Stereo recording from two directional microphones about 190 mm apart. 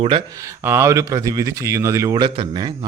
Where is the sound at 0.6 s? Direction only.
15° right (ahead or behind).